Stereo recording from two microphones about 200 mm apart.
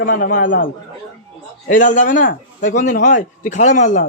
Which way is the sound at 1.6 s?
40° left (ahead or behind).